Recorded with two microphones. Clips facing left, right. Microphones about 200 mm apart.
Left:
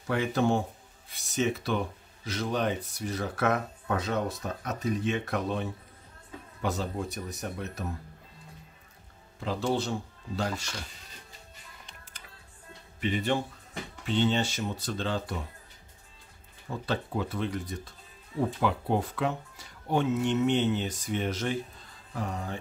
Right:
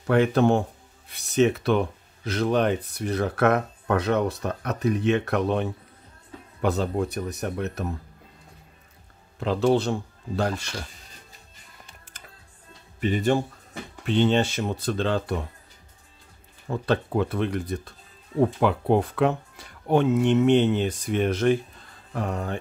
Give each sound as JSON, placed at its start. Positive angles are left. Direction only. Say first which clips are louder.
{"t": 0.0, "sound": "speech", "louder": "right 7 dB", "side_deg": -60}
{"t": 9.4, "sound": "speech", "louder": "right 8 dB", "side_deg": -65}
{"t": 13.0, "sound": "speech", "louder": "right 6 dB", "side_deg": -45}
{"t": 14.0, "sound": "speech", "louder": "right 6 dB", "side_deg": -60}
{"t": 16.6, "sound": "speech", "louder": "right 7 dB", "side_deg": -60}